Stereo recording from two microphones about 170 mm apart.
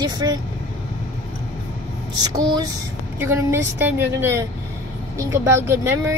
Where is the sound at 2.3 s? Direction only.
25° right (ahead or behind).